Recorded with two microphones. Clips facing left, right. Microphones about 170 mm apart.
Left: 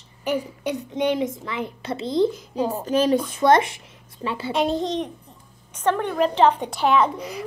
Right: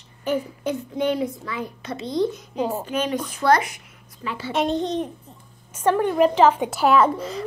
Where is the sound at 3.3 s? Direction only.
25° left (ahead or behind).